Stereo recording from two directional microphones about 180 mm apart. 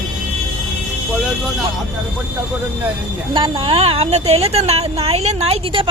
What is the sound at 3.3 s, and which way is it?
A woman's voice, 30° right (ahead or behind).